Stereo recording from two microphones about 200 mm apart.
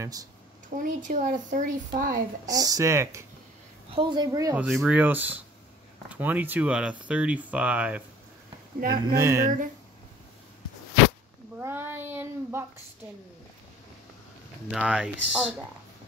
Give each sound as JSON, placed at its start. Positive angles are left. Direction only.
{"t": 0.0, "sound": "speech", "side_deg": -15}
{"t": 0.8, "sound": "speech", "side_deg": -40}
{"t": 2.4, "sound": "a woman's voice", "side_deg": -20}
{"t": 4.6, "sound": "speech", "side_deg": -5}
{"t": 8.8, "sound": "speech", "side_deg": -50}
{"t": 9.2, "sound": "speech", "side_deg": -15}
{"t": 11.6, "sound": "child singing", "side_deg": -10}
{"t": 14.7, "sound": "speech", "side_deg": -5}